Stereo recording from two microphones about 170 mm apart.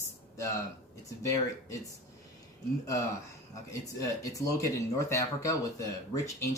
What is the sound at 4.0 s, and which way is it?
Speech, 20° left (ahead or behind).